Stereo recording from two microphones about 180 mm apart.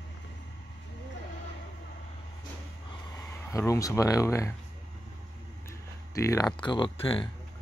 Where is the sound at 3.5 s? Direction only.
15° left (ahead or behind).